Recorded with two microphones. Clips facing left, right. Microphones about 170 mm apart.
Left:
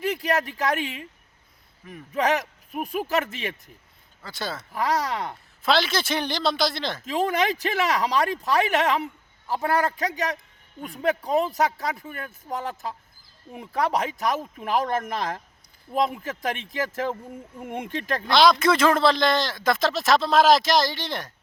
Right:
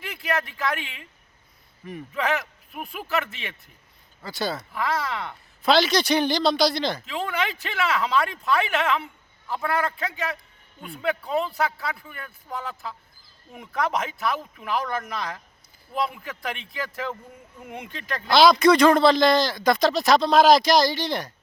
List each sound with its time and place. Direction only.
0.0 s speech: 40° left (ahead or behind)
2.1 s speech: 40° left (ahead or behind)
4.2 s a man's voice: centre (ahead or behind)
4.7 s speech: 40° left (ahead or behind)
5.6 s a man's voice: centre (ahead or behind)
7.0 s speech: 40° left (ahead or behind)
18.3 s a man's voice: centre (ahead or behind)